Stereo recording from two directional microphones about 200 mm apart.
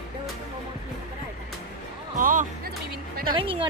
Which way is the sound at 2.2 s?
40° right (ahead or behind).